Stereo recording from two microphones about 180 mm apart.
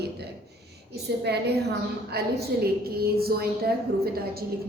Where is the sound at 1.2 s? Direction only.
65° right (ahead or behind).